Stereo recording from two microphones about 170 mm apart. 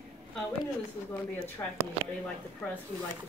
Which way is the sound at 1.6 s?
15° left (ahead or behind).